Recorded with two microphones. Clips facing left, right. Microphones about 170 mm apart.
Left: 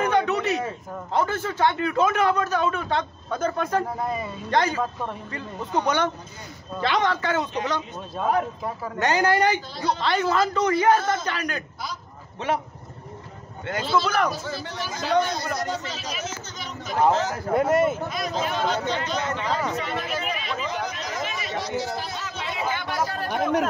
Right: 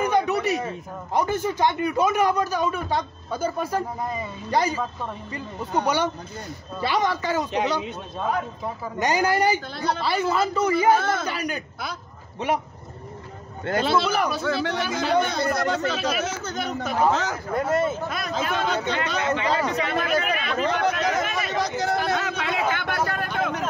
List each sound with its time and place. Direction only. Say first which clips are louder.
0.0 s a sound: even; 10° right (ahead or behind)
1.1 s a man's voice: right 1 dB; 15° right (ahead or behind)
6.8 s a man's voice: even; 10° right (ahead or behind)
8.9 s a man's voice: left 1 dB; 10° right (ahead or behind)
13.7 s a man's voice: right 1 dB; 65° right (ahead or behind)
17.5 s speech: left 3 dB; 20° left (ahead or behind)
18.0 s a man's voice: even; 60° right (ahead or behind)